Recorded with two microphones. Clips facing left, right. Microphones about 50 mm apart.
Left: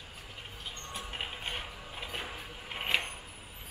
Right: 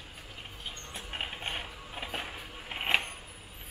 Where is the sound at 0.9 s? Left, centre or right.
Centre.